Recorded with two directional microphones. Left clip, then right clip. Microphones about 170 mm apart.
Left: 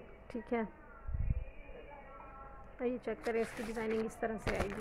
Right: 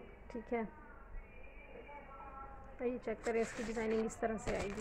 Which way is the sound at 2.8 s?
20° left (ahead or behind).